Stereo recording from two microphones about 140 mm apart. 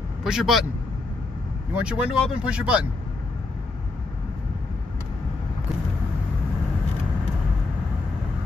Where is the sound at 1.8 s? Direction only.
10° right (ahead or behind).